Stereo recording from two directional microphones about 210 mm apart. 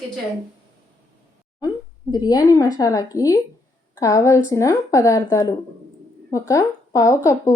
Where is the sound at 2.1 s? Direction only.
20° left (ahead or behind).